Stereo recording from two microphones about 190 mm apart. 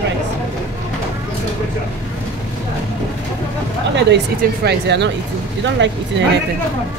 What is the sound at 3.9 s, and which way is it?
Speech, 65° right (ahead or behind).